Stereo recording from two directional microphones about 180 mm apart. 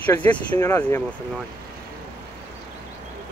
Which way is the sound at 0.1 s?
10° left (ahead or behind).